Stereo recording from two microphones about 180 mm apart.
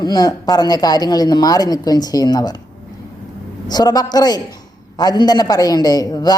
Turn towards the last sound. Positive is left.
turn(degrees=20)  # may be behind; listen again after turning